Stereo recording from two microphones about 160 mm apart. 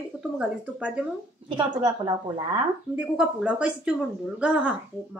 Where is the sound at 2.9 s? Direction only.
5° right (ahead or behind).